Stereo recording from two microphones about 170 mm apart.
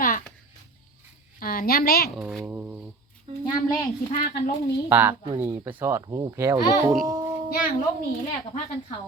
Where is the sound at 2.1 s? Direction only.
Centre (ahead or behind).